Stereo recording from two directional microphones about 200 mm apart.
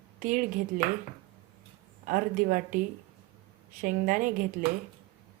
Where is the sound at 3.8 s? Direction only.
40° right (ahead or behind).